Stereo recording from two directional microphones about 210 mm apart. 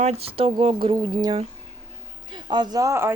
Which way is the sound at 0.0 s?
30° right (ahead or behind).